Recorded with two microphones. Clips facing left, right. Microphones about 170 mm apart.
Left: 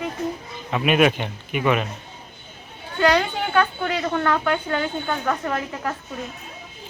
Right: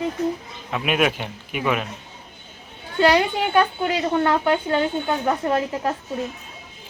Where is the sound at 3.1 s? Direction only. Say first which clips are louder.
Right 1 dB; 15° right (ahead or behind).